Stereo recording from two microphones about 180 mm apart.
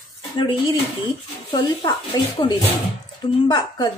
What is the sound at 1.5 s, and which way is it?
Speech, 25° left (ahead or behind).